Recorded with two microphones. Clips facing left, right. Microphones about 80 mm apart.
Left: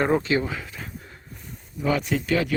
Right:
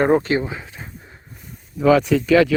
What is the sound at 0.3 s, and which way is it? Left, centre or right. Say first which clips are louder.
Speech: right 2 dB; right.